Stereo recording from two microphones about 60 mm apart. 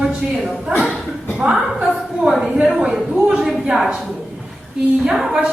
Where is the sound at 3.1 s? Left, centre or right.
Centre.